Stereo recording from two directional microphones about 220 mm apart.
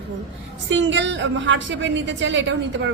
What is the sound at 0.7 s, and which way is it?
A woman's voice, 55° right (ahead or behind).